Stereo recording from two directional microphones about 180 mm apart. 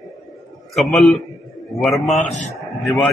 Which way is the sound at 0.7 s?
Centre (ahead or behind).